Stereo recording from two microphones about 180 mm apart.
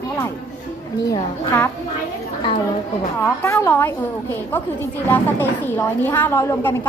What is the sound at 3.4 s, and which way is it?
Speech, 15° left (ahead or behind).